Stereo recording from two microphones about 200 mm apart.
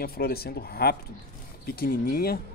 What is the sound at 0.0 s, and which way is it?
A man's voice, 50° left (ahead or behind).